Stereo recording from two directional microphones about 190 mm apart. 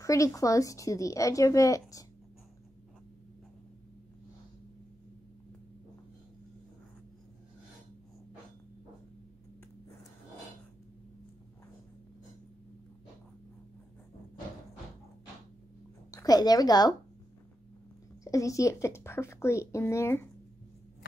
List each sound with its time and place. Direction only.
0.0 s speech: 15° left (ahead or behind)
16.1 s a sound: 20° left (ahead or behind)
18.2 s speech: 15° left (ahead or behind)